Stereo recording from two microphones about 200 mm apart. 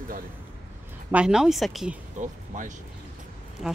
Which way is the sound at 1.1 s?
5° right (ahead or behind).